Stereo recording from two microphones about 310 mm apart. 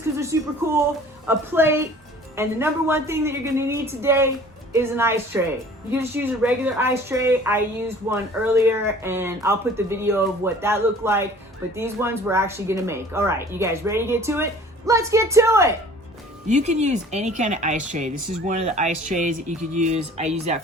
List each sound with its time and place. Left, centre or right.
0.3 s speech: centre
16.5 s speech: right